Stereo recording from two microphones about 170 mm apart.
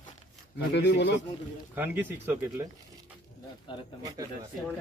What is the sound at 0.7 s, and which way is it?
Speech, 90° left.